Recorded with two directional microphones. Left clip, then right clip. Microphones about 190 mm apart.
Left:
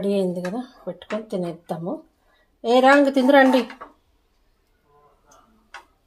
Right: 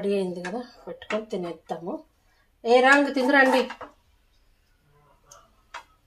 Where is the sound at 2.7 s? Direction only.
40° left (ahead or behind).